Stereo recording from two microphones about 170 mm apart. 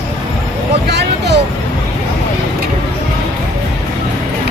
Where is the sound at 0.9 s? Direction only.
80° right.